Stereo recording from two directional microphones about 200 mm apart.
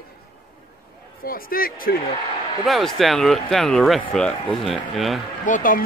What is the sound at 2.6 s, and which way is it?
Speech, centre (ahead or behind).